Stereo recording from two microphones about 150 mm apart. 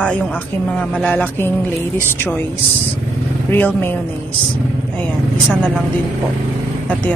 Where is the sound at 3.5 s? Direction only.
15° left (ahead or behind).